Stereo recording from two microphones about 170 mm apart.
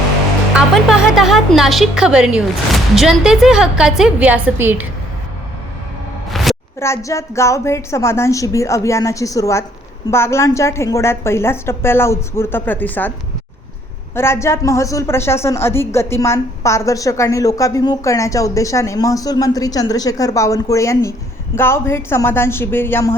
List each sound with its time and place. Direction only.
0.5 s a woman's voice: centre (ahead or behind)
6.3 s a sound: centre (ahead or behind)
6.7 s a woman's voice: 15° left (ahead or behind)
14.2 s a woman's voice: 15° left (ahead or behind)